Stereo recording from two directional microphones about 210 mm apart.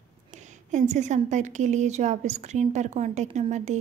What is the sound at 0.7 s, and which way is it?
A woman's voice, 35° right (ahead or behind).